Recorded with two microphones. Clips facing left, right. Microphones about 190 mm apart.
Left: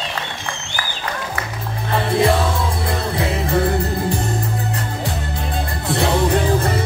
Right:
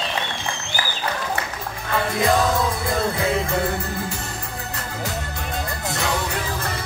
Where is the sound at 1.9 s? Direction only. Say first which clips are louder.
Left 5 dB; 30° left (ahead or behind).